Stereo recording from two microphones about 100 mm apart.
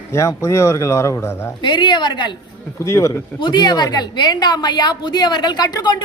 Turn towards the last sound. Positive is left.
turn(degrees=45)  # may be behind; listen again after turning